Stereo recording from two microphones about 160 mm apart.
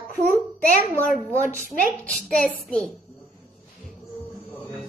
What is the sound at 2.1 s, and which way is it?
Child singing, 5° left (ahead or behind).